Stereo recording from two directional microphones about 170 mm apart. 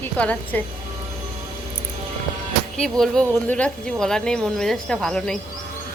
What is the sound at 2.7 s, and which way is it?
Speech, 5° left (ahead or behind).